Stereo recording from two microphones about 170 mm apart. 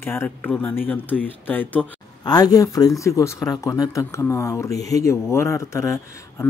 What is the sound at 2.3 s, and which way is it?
Speech, 20° left (ahead or behind).